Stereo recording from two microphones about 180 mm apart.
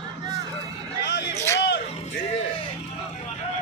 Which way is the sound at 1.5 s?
75° left (ahead or behind).